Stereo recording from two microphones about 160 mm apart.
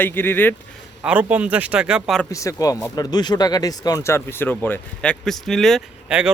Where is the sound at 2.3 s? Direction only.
20° left (ahead or behind).